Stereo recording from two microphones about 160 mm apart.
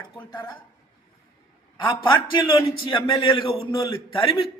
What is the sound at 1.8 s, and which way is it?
A man's voice, 30° left (ahead or behind).